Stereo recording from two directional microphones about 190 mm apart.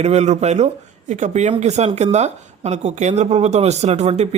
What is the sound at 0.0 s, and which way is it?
Speech, 35° right (ahead or behind).